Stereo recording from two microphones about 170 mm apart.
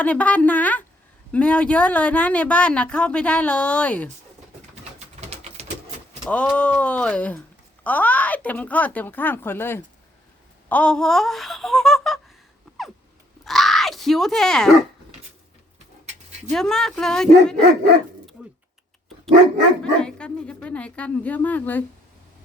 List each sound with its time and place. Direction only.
0.0 s speech: 10° left (ahead or behind)
5.3 s typewriter: 40° right (ahead or behind)
6.2 s speech: 5° left (ahead or behind)
13.4 s grunt: centre (ahead or behind)
16.5 s speech: 5° left (ahead or behind)
19.8 s speech: 5° left (ahead or behind)